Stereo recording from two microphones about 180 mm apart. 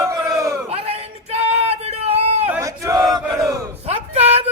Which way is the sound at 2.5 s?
15° right (ahead or behind).